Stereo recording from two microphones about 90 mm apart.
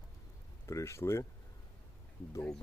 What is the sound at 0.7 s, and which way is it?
Speech, 30° left (ahead or behind).